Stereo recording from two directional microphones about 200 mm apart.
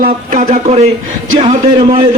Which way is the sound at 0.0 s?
40° right (ahead or behind).